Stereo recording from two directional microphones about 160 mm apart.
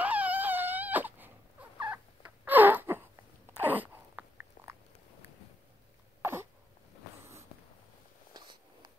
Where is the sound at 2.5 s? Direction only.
10° right (ahead or behind).